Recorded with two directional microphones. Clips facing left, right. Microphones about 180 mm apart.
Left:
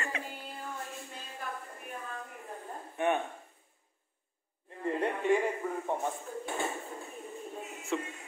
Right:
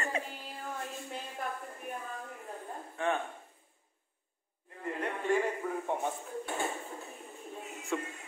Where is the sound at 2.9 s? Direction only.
20° left (ahead or behind).